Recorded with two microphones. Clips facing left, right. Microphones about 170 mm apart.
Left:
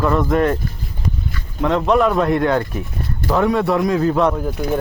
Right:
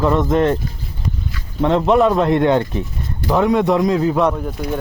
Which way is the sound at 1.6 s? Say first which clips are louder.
Right 2 dB; 25° right (ahead or behind).